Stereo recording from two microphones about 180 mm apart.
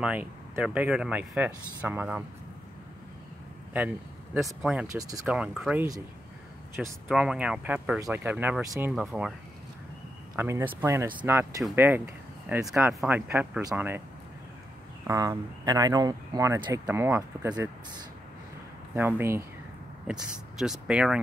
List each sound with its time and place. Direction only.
0.0 s speech: 10° right (ahead or behind)
3.7 s speech: 10° right (ahead or behind)
7.1 s speech: 5° right (ahead or behind)
10.3 s speech: 10° right (ahead or behind)
15.0 s speech: 20° right (ahead or behind)
18.9 s speech: 10° right (ahead or behind)
20.1 s speech: centre (ahead or behind)